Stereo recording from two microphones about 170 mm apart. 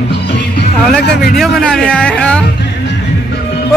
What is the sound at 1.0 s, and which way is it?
Speech, 70° left (ahead or behind).